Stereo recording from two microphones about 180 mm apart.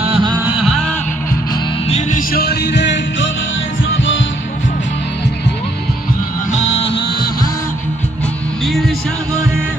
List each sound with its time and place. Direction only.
0.0 s music: 30° right (ahead or behind)
0.3 s music: 5° right (ahead or behind)
1.9 s music: 40° left (ahead or behind); by 3.2 s 75° left (ahead or behind)
6.6 s music: 30° left (ahead or behind)